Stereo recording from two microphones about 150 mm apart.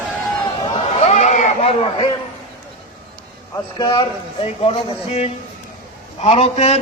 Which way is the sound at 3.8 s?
30° left (ahead or behind).